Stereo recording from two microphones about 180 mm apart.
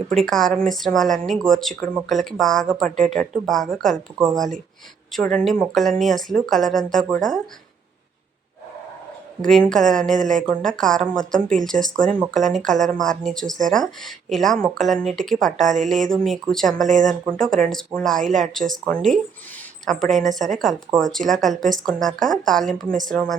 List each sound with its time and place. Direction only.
0.2 s speech: centre (ahead or behind)
4.4 s a woman's voice: 45° right (ahead or behind)
5.1 s speech: 5° left (ahead or behind)
9.4 s speech: 5° left (ahead or behind)
15.5 s a woman's voice: 45° right (ahead or behind)
15.9 s speech: centre (ahead or behind)
16.8 s a woman's voice: 45° right (ahead or behind)
17.3 s speech: 5° left (ahead or behind)